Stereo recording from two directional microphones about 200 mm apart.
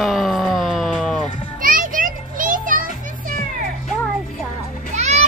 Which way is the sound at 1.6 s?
45° right (ahead or behind).